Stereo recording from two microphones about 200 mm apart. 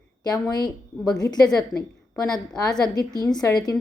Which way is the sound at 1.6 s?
5° left (ahead or behind).